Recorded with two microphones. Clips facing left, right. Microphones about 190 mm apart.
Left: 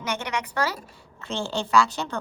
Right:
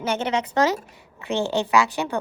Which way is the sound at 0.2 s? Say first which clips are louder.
Right 6 dB; 25° right (ahead or behind).